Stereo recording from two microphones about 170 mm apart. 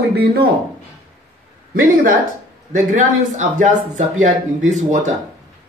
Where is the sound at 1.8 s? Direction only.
55° right (ahead or behind).